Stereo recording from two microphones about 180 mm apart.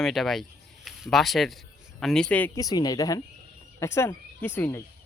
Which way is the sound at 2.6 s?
20° left (ahead or behind).